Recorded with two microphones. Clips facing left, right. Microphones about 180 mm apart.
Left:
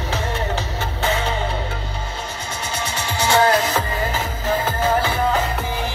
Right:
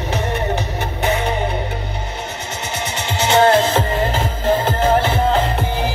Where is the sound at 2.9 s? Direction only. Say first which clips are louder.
Right 3 dB; 20° right (ahead or behind).